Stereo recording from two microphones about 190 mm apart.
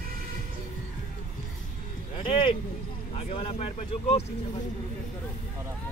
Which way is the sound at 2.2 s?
25° left (ahead or behind).